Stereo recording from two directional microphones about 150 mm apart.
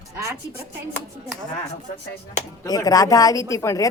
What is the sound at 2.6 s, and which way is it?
Speech, 25° left (ahead or behind).